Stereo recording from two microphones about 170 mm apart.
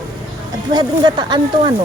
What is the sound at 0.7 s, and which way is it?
Speech, 25° right (ahead or behind).